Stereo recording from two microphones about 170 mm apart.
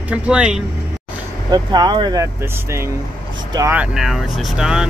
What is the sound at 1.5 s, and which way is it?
Speech, 25° right (ahead or behind).